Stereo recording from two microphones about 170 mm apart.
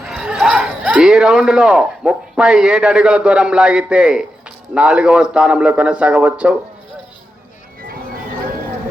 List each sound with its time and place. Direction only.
0.0 s a man's voice: 5° right (ahead or behind)